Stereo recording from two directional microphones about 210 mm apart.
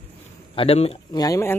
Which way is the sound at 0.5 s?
30° left (ahead or behind).